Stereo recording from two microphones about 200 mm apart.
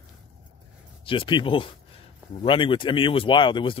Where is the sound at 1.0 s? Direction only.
25° left (ahead or behind).